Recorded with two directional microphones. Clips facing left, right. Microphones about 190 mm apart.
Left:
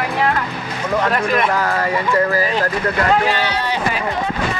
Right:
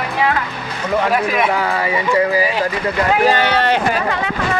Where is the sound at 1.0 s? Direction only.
5° right (ahead or behind).